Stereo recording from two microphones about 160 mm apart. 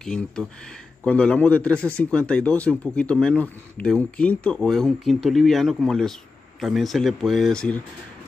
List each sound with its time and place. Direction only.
0.0 s speech: 5° left (ahead or behind)